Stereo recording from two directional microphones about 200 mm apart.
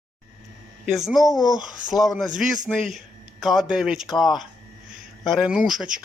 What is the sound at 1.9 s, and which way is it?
Speech, centre (ahead or behind).